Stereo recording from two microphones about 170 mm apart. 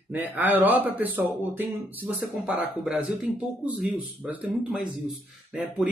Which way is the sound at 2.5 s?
10° right (ahead or behind).